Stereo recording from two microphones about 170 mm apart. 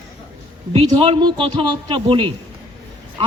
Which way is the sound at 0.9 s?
30° right (ahead or behind).